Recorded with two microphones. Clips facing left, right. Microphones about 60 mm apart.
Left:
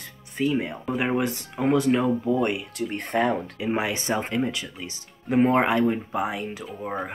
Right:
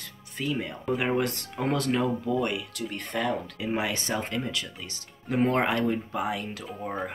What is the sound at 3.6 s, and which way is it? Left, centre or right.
Speech, centre.